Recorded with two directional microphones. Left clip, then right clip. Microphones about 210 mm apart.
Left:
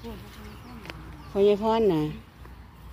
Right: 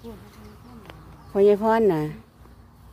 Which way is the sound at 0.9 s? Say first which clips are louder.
Left 5 dB; 15° left (ahead or behind).